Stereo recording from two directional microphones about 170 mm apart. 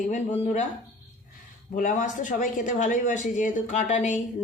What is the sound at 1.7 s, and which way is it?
Speech, 50° left (ahead or behind).